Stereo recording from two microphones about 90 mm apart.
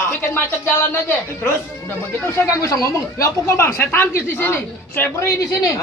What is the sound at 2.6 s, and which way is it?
Speech, 35° left (ahead or behind).